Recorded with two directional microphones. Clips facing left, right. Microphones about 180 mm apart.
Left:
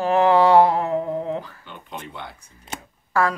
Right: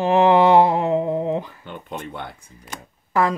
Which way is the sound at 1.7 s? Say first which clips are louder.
Right 4 dB; 50° right (ahead or behind).